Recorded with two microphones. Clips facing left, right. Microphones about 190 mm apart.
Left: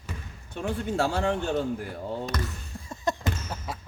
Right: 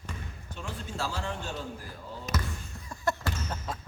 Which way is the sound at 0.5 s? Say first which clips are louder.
Left 10 dB; 65° left (ahead or behind).